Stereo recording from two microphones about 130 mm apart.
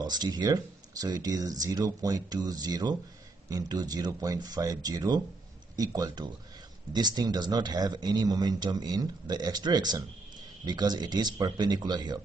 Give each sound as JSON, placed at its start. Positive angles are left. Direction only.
{"t": 0.0, "sound": "speech", "side_deg": -30}